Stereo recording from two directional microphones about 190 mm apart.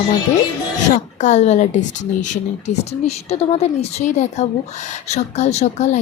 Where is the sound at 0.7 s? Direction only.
40° left (ahead or behind).